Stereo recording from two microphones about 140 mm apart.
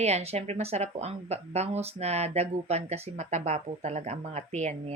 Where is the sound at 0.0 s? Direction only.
50° right (ahead or behind).